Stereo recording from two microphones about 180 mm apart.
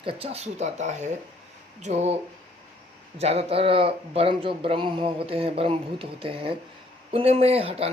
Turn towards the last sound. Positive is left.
turn(degrees=-35)  # may be behind; listen again after turning